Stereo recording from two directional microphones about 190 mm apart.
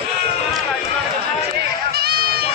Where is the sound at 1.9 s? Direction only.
55° right (ahead or behind).